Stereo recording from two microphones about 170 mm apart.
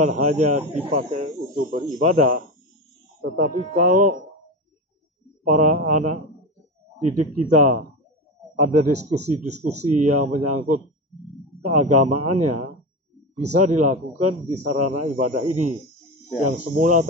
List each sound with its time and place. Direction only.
0.0 s speech: 45° right (ahead or behind)
5.5 s speech: 50° right (ahead or behind)
7.3 s speech: 50° right (ahead or behind)
16.7 s speech: 50° right (ahead or behind)